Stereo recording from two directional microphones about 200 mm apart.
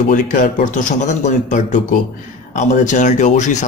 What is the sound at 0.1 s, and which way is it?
Speech, 40° left (ahead or behind).